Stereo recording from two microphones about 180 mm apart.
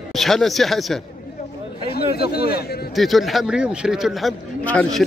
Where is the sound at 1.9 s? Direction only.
60° left (ahead or behind).